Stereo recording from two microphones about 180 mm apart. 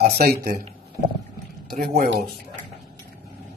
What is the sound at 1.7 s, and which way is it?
Speech, 55° right (ahead or behind).